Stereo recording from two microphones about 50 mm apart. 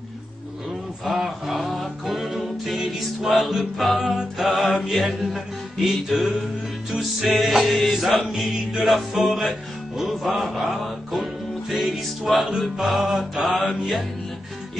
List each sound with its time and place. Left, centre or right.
1.0 s music: centre